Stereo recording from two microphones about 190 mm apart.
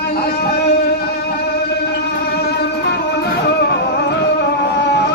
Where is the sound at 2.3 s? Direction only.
60° left (ahead or behind).